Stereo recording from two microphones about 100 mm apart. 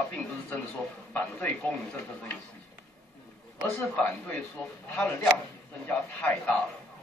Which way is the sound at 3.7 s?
15° left (ahead or behind).